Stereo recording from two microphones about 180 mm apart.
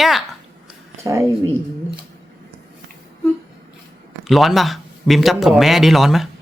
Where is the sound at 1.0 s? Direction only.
15° right (ahead or behind).